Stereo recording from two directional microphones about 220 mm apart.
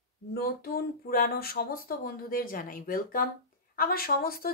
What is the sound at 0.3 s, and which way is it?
A woman's voice, 40° left (ahead or behind).